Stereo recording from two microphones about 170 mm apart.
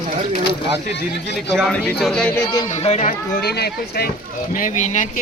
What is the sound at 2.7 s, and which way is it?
Speech, 40° left (ahead or behind).